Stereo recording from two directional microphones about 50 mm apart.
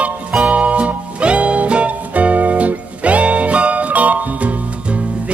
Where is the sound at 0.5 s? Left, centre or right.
Right.